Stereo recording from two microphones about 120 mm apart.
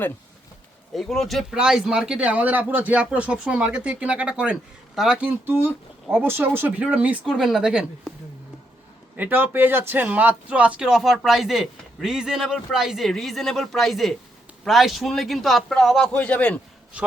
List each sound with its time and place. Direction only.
0.9 s a man's voice: centre (ahead or behind)
5.5 s a man's voice: 15° right (ahead or behind)
9.1 s a man's voice: 15° right (ahead or behind); by 16.6 s 10° left (ahead or behind)